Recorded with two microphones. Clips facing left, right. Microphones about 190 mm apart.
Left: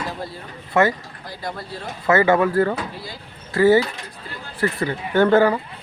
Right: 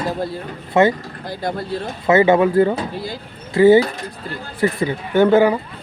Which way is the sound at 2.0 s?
20° right (ahead or behind).